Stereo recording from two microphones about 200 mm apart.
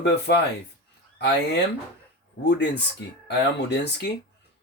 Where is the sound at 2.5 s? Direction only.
60° left (ahead or behind).